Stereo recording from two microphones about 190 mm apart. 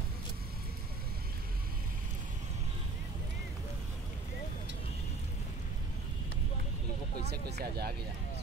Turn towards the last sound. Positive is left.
turn(degrees=-55)  # may be behind; listen again after turning